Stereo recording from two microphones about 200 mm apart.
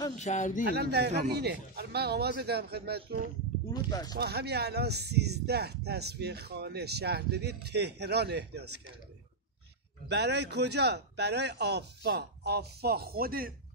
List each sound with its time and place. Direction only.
0.2 s speech: 35° left (ahead or behind)
0.7 s a man's voice: 55° right (ahead or behind)
4.2 s speech: 55° right (ahead or behind)
10.0 s speech: 55° right (ahead or behind)